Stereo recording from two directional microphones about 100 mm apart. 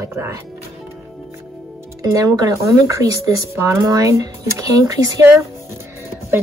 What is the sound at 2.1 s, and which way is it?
Speech, 35° right (ahead or behind).